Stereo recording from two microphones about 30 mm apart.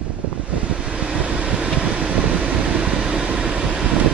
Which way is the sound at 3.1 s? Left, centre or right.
Right.